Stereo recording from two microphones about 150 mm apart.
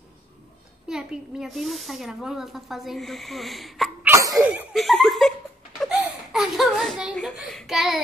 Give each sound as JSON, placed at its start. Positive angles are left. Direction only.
{"t": 0.8, "sound": "speech", "side_deg": -5}
{"t": 4.0, "sound": "sneeze", "side_deg": -20}
{"t": 4.4, "sound": "speech", "side_deg": -5}
{"t": 5.8, "sound": "a sound", "side_deg": -5}